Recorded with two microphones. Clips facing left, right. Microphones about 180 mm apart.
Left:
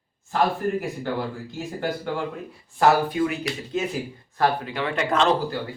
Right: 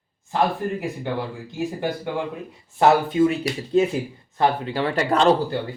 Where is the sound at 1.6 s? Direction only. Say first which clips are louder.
Right 3 dB; 15° right (ahead or behind).